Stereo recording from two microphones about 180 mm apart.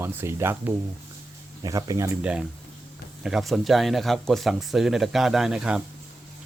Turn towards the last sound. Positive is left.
turn(degrees=-5)  # may be behind; listen again after turning